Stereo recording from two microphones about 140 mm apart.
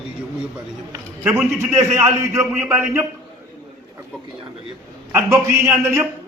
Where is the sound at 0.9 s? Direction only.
20° right (ahead or behind).